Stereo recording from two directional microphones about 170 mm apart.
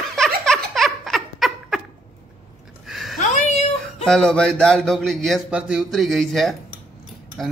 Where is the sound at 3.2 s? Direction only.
45° left (ahead or behind).